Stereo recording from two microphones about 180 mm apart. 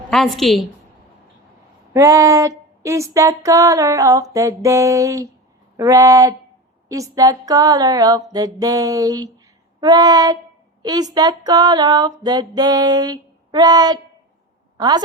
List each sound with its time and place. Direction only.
0.1 s a woman's voice: centre (ahead or behind)
1.9 s a sound: 15° right (ahead or behind)
14.8 s a woman's voice: 25° right (ahead or behind)